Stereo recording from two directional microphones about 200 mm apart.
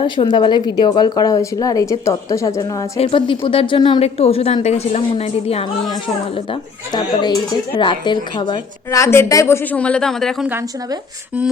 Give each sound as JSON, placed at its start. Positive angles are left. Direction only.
{"t": 0.0, "sound": "a woman's voice", "side_deg": 25}